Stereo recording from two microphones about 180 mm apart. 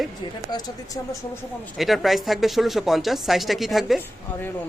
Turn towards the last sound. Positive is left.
turn(degrees=0)  # may be behind; listen again after turning